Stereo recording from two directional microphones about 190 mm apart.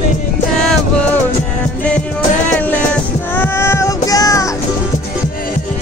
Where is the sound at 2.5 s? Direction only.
10° left (ahead or behind).